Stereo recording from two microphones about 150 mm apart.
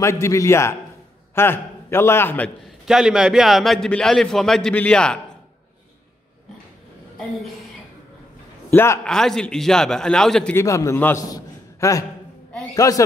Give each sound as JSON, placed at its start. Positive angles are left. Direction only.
{"t": 0.0, "sound": "a man's voice", "side_deg": 20}
{"t": 2.8, "sound": "a man's voice", "side_deg": -5}
{"t": 7.2, "sound": "a man's voice", "side_deg": 0}
{"t": 8.6, "sound": "a man's voice", "side_deg": 15}
{"t": 9.0, "sound": "a man's voice", "side_deg": 5}
{"t": 10.5, "sound": "a man's voice", "side_deg": 20}
{"t": 11.2, "sound": "a sound", "side_deg": 25}
{"t": 12.7, "sound": "speech", "side_deg": 20}